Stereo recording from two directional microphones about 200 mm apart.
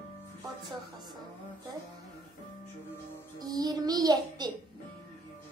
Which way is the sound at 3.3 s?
20° right (ahead or behind).